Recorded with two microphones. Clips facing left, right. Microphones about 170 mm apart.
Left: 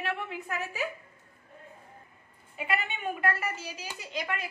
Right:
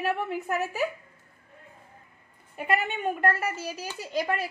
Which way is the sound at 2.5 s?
50° right (ahead or behind).